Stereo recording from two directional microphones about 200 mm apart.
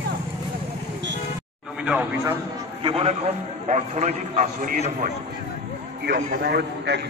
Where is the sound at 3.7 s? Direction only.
35° right (ahead or behind).